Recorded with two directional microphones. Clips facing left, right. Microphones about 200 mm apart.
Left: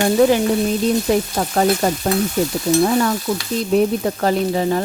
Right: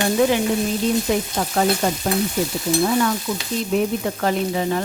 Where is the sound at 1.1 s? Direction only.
45° left (ahead or behind).